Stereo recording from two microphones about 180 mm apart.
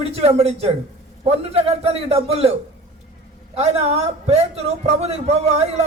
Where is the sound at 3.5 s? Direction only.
35° right (ahead or behind).